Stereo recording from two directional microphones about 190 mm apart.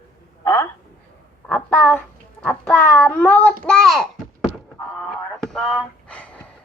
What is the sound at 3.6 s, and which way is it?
Speech, 5° left (ahead or behind).